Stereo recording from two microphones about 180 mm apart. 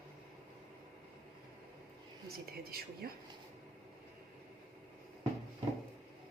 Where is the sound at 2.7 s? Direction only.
60° right (ahead or behind).